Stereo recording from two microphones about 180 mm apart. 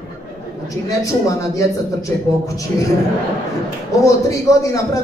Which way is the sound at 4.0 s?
15° left (ahead or behind).